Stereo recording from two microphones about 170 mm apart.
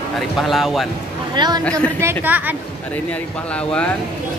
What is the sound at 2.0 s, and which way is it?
Speech, 10° right (ahead or behind).